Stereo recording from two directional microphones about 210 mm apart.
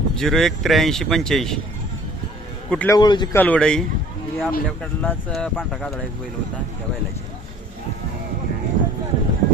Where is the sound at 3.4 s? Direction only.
5° left (ahead or behind).